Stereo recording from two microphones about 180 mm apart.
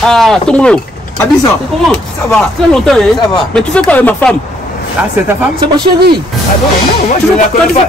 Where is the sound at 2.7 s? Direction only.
5° left (ahead or behind).